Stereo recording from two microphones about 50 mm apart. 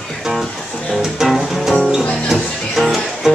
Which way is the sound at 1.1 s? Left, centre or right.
Centre.